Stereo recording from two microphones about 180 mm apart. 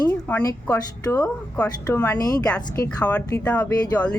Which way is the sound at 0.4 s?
20° left (ahead or behind).